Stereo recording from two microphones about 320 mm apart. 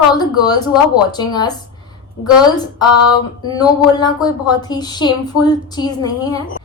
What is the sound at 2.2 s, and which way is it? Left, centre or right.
Speech, left.